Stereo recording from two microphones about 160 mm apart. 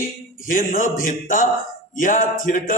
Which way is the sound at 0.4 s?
60° left (ahead or behind).